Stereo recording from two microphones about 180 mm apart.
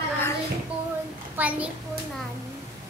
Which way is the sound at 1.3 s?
10° right (ahead or behind).